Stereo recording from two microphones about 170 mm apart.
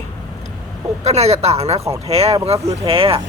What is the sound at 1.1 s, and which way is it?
Speech, 40° right (ahead or behind).